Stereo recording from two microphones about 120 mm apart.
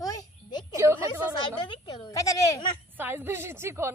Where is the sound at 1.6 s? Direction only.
45° left (ahead or behind).